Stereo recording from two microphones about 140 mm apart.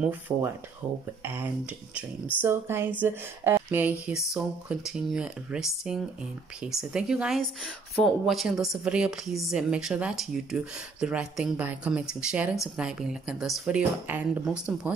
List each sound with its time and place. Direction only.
0.0 s a woman's voice: 15° right (ahead or behind)